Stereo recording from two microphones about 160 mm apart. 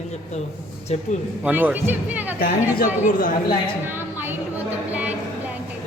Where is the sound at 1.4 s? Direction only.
10° right (ahead or behind).